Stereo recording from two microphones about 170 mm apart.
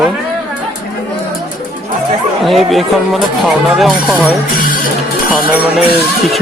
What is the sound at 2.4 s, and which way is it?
Speech, centre (ahead or behind).